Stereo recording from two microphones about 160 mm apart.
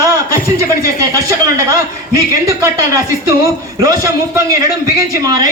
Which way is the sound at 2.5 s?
20° right (ahead or behind).